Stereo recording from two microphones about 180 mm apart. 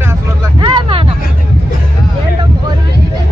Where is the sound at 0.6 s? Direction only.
25° right (ahead or behind).